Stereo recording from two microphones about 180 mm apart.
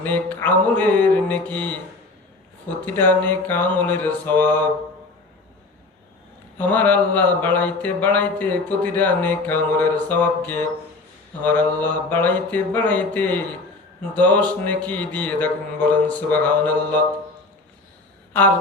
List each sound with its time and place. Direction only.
0.0 s mantra: 10° left (ahead or behind)
2.8 s mantra: 10° left (ahead or behind)
6.6 s mantra: 10° left (ahead or behind)